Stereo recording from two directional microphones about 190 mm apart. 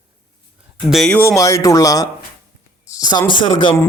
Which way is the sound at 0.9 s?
Centre (ahead or behind).